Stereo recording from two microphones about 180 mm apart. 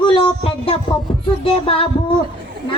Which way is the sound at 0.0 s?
30° left (ahead or behind).